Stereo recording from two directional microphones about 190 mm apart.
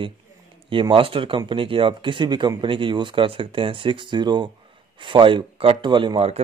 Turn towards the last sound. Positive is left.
turn(degrees=-30)  # may be behind; listen again after turning